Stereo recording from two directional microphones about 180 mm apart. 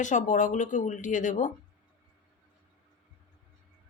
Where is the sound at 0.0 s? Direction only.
45° left (ahead or behind).